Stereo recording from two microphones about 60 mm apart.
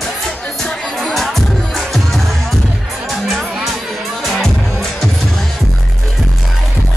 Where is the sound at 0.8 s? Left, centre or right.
Centre.